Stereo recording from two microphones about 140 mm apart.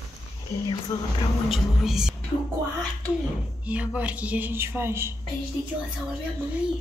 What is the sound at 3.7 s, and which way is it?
A woman's voice, 10° right (ahead or behind).